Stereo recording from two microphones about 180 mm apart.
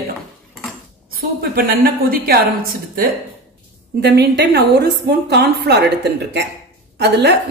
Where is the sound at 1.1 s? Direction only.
55° right (ahead or behind).